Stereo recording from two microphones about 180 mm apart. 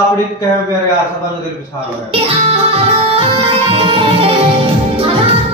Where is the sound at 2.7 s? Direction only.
30° right (ahead or behind).